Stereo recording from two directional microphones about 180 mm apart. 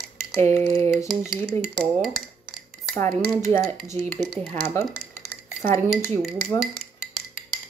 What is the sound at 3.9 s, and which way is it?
Speech, 40° right (ahead or behind).